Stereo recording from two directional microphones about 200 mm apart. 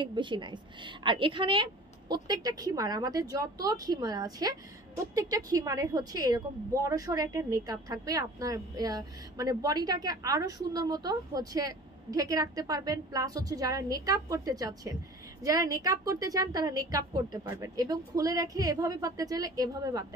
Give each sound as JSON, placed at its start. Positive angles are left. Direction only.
{"t": 0.0, "sound": "a woman's voice", "side_deg": -25}